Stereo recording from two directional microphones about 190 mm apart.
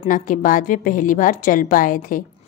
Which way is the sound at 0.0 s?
45° left (ahead or behind).